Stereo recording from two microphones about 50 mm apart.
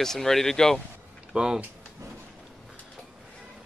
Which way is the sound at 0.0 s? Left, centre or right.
Centre.